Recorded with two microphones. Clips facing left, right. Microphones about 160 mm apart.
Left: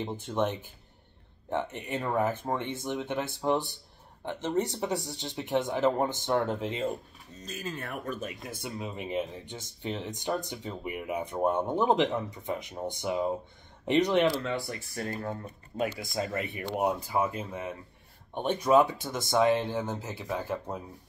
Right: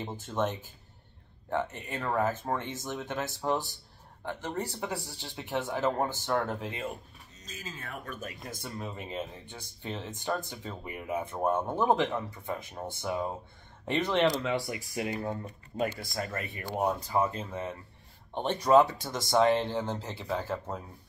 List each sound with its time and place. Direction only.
0.0 s speech: 15° left (ahead or behind)
1.5 s speech: 20° left (ahead or behind)
7.4 s speech: 65° left (ahead or behind)
8.4 s speech: 10° left (ahead or behind)
14.3 s speech: 10° right (ahead or behind)
16.2 s speech: 20° left (ahead or behind)